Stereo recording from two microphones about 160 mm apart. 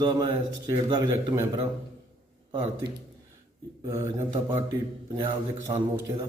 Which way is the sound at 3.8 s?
20° right (ahead or behind).